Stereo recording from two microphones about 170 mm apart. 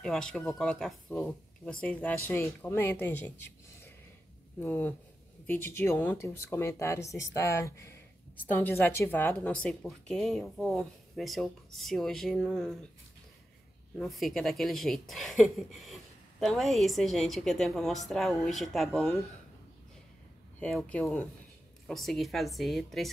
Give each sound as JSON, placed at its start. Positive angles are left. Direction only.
{"t": 0.0, "sound": "a woman's voice", "side_deg": 5}
{"t": 13.9, "sound": "a woman's voice", "side_deg": 0}
{"t": 20.5, "sound": "a woman's voice", "side_deg": 5}